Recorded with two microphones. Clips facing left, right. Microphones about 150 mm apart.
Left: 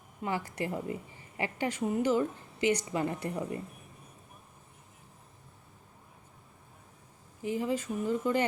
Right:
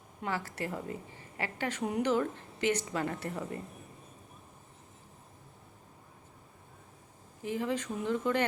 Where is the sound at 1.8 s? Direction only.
Centre (ahead or behind).